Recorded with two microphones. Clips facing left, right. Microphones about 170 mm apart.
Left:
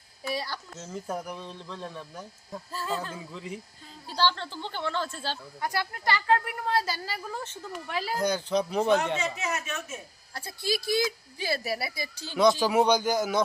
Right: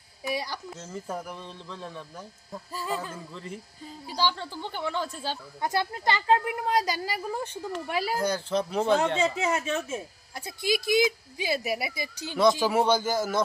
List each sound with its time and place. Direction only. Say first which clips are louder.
0.3 s speech: right 1 dB; 15° right (ahead or behind)
0.8 s speech: left 3 dB; centre (ahead or behind)
3.2 s speech: left 1 dB; 5° left (ahead or behind)
4.1 s speech: left 1 dB; 10° right (ahead or behind)
9.1 s a woman's voice: right 5 dB; 30° right (ahead or behind)
12.4 s speech: even; 5° right (ahead or behind)